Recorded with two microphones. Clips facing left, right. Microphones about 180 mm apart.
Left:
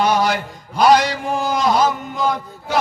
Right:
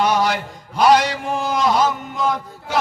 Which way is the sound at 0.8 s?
35° left (ahead or behind).